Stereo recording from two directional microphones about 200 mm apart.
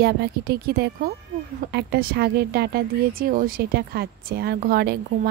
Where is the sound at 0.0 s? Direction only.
50° right (ahead or behind).